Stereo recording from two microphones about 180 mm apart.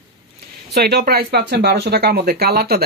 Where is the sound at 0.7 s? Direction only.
60° right (ahead or behind).